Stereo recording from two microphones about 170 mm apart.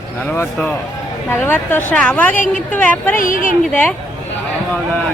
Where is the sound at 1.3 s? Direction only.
10° left (ahead or behind).